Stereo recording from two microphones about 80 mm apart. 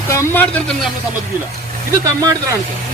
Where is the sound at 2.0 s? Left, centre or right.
Right.